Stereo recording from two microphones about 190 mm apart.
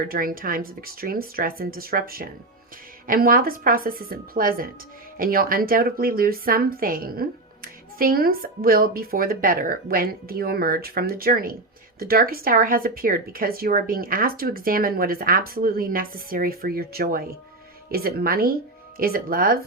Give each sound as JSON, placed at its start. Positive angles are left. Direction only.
{"t": 0.0, "sound": "speech", "side_deg": -50}